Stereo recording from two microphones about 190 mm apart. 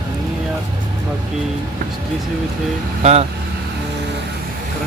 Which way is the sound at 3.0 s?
35° right (ahead or behind).